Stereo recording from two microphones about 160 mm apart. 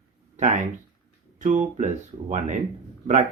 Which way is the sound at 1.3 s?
50° right (ahead or behind).